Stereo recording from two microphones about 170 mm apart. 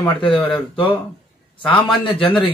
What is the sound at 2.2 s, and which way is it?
Speech, 30° left (ahead or behind).